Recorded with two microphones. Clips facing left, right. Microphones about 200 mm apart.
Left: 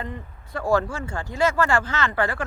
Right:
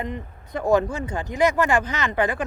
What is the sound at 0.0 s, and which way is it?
Speech, 20° right (ahead or behind).